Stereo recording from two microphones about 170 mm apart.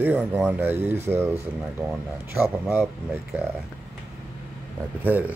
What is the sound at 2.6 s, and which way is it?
Speech, centre (ahead or behind).